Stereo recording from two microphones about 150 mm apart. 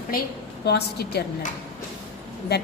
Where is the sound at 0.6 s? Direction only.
90° left.